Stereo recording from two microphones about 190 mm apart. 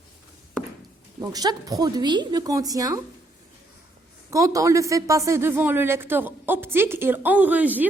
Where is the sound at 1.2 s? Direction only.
20° right (ahead or behind).